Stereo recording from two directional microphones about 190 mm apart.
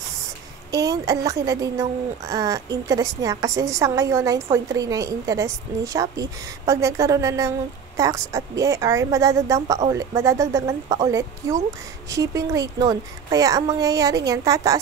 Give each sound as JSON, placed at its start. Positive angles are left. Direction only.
{"t": 0.7, "sound": "a woman's voice", "side_deg": -20}